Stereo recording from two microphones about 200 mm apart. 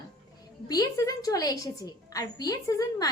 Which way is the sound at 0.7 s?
20° left (ahead or behind).